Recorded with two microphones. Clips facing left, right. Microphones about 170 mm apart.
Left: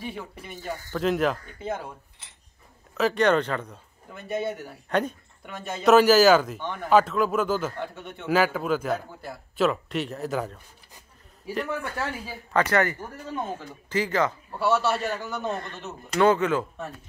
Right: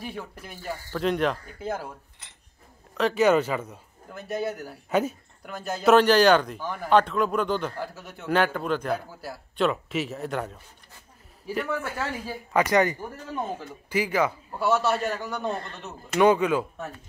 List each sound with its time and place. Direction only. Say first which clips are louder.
0.0 s a man's voice: even; centre (ahead or behind)
3.0 s a man's voice: right 1 dB; centre (ahead or behind)
12.5 s a man's voice: right 1 dB; 15° right (ahead or behind)
14.7 s a man's voice: even; centre (ahead or behind)
16.2 s a man's voice: right 1 dB; 15° right (ahead or behind)